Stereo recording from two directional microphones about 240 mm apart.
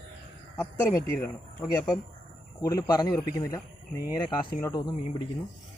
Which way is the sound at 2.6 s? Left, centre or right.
Centre.